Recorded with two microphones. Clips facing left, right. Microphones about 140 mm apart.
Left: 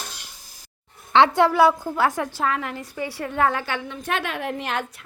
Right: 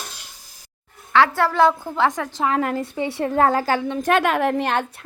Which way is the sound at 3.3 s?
35° right (ahead or behind).